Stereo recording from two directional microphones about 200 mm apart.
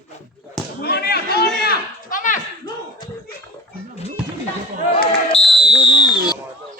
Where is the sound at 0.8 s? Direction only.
50° left (ahead or behind).